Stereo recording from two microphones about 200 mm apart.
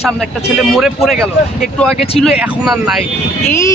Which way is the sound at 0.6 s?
Centre (ahead or behind).